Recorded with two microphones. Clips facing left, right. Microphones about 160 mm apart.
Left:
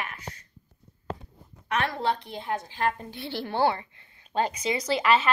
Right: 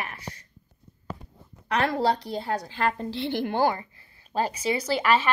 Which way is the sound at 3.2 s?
45° right (ahead or behind).